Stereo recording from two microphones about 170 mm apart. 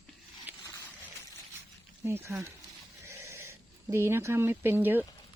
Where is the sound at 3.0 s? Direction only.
15° right (ahead or behind).